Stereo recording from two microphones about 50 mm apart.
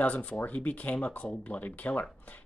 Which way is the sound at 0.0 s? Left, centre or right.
Left.